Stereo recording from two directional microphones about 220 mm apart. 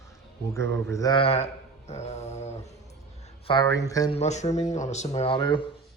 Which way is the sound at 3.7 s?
15° left (ahead or behind).